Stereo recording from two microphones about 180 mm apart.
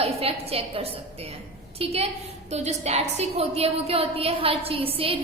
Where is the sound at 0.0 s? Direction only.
35° right (ahead or behind).